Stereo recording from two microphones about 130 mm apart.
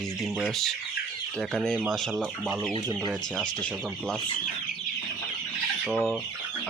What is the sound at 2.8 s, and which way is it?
Speech, 30° right (ahead or behind).